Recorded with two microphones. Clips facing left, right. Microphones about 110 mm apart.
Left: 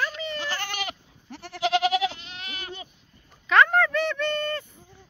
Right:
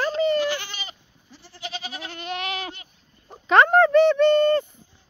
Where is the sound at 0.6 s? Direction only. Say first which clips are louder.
Left 6 dB; 65° left (ahead or behind); by 2.1 s 90° left.